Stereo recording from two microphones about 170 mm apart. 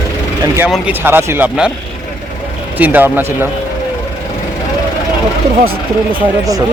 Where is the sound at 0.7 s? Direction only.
10° right (ahead or behind).